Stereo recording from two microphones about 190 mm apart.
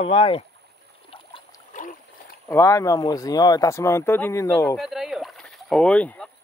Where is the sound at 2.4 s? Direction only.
15° left (ahead or behind).